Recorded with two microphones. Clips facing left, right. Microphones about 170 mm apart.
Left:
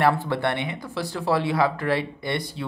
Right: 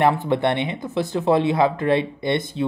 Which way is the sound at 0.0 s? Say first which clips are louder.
Right 3 dB; 20° right (ahead or behind).